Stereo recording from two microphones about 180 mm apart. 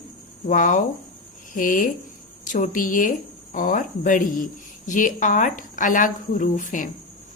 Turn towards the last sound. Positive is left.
turn(degrees=50)  # may be behind; listen again after turning